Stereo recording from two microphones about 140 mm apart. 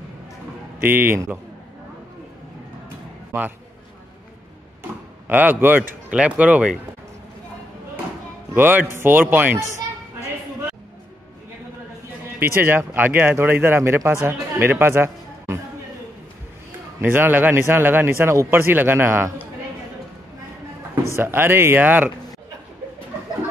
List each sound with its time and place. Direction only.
0.8 s speech: 15° right (ahead or behind)
3.3 s a man's voice: 15° right (ahead or behind)
5.3 s speech: 15° right (ahead or behind)
8.5 s speech: 15° right (ahead or behind)
12.4 s speech: 15° right (ahead or behind)
17.0 s speech: 15° right (ahead or behind)
21.2 s speech: 15° right (ahead or behind)